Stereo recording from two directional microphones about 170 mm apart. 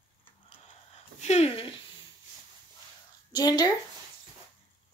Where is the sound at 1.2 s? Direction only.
40° left (ahead or behind).